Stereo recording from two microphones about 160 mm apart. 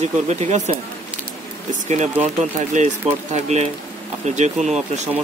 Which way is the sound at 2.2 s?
45° right (ahead or behind).